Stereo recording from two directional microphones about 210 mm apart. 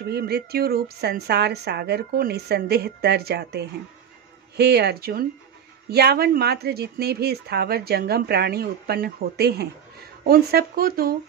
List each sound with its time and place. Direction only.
0.1 s speech: 50° right (ahead or behind)